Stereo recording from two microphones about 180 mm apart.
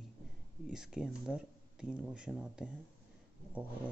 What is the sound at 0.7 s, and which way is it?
Speech, 5° right (ahead or behind).